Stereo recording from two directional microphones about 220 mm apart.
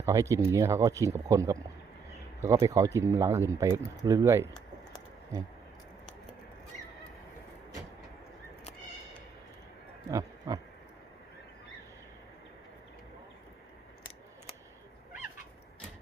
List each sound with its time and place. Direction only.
0.0 s speech: 15° right (ahead or behind)
10.1 s pig: 15° right (ahead or behind)